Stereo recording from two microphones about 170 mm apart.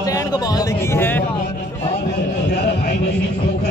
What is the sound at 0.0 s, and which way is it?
Speech, 20° left (ahead or behind).